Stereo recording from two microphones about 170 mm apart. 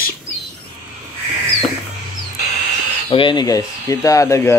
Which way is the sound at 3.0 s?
30° left (ahead or behind).